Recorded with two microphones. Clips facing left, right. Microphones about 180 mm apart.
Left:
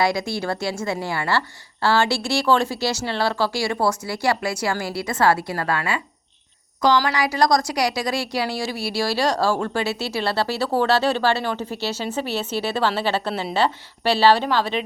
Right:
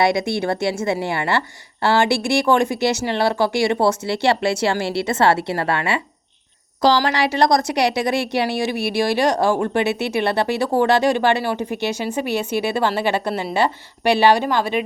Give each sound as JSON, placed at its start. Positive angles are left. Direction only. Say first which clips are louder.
{"t": 0.0, "sound": "speech", "louder": "right 4 dB", "side_deg": -20}
{"t": 2.0, "sound": "speech", "louder": "right 5 dB", "side_deg": -55}
{"t": 2.3, "sound": "speech", "louder": "right 1 dB", "side_deg": -15}